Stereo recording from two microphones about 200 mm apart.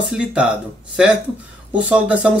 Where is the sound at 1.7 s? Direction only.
5° right (ahead or behind).